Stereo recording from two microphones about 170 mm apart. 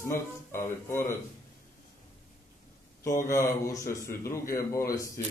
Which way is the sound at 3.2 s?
15° left (ahead or behind).